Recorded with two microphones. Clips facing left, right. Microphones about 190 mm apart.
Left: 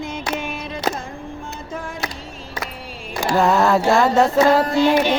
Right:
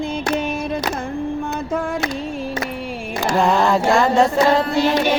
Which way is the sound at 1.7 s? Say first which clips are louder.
Right 8 dB; 60° right (ahead or behind).